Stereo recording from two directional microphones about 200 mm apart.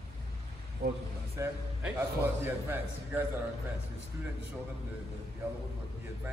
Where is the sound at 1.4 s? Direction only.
10° right (ahead or behind).